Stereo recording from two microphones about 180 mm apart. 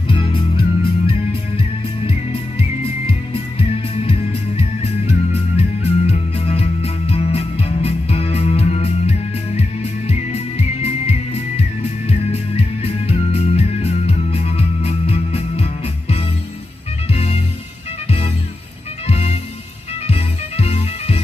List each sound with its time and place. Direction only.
0.1 s music: 30° left (ahead or behind)
3.1 s music: 30° left (ahead or behind)